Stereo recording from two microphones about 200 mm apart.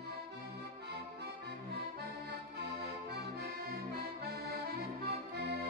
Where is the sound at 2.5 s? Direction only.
55° right (ahead or behind).